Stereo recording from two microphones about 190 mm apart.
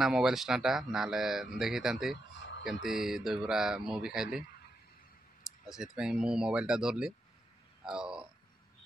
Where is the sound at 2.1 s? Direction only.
70° left (ahead or behind).